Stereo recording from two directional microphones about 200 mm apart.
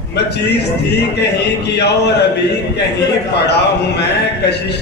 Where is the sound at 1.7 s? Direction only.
55° left (ahead or behind).